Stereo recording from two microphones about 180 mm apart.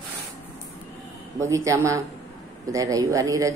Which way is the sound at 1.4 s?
15° right (ahead or behind).